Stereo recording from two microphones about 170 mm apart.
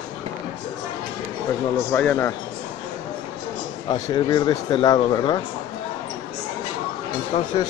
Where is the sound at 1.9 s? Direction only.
10° left (ahead or behind).